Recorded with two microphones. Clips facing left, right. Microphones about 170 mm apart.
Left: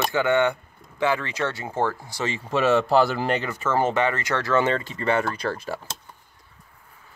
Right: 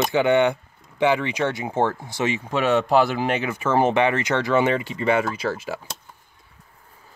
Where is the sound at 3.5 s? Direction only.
15° right (ahead or behind).